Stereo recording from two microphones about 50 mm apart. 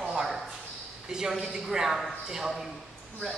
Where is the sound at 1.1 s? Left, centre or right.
Centre.